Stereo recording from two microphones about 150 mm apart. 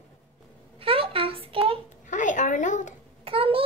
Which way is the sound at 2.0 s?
55° left (ahead or behind).